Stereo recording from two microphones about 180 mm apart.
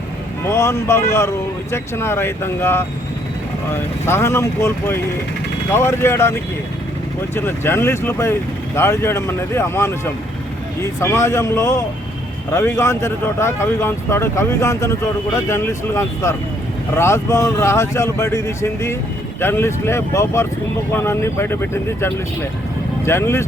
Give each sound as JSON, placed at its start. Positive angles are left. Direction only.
{"t": 0.4, "sound": "speech", "side_deg": 15}
{"t": 11.0, "sound": "speech", "side_deg": 15}